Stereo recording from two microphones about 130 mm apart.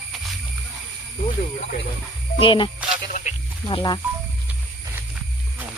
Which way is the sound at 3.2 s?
90° left.